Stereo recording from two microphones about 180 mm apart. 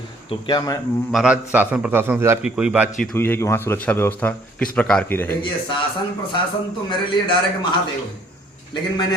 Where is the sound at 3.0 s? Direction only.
10° left (ahead or behind).